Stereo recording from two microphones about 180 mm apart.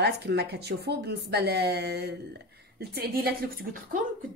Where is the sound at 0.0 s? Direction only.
65° right (ahead or behind).